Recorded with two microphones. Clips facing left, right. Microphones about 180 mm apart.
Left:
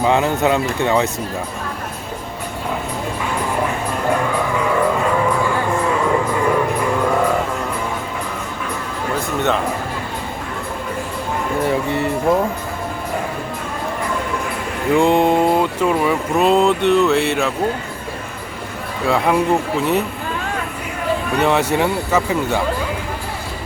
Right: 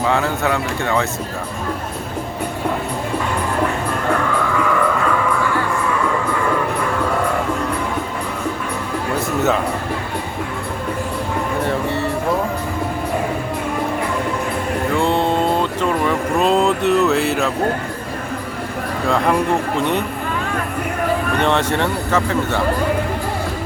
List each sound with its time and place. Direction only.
0.0 s speech: 20° left (ahead or behind)
4.5 s music: 25° left (ahead or behind)
14.9 s speech: 15° left (ahead or behind); by 17.5 s centre (ahead or behind)
19.0 s speech: 5° left (ahead or behind)
21.3 s speech: 5° left (ahead or behind)